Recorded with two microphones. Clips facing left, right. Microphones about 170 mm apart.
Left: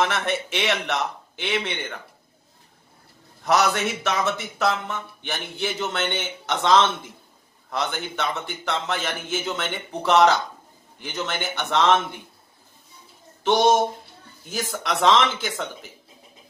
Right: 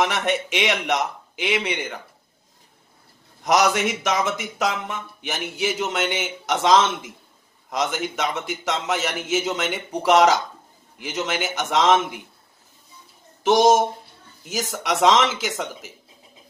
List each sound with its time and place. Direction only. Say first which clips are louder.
0.0 s speech: right 2 dB; 15° right (ahead or behind)
3.4 s speech: right 2 dB; 15° right (ahead or behind)
13.4 s speech: right 2 dB; 10° right (ahead or behind)
14.4 s speech: right 2 dB; 90° right
14.8 s speech: right 1 dB; 10° right (ahead or behind)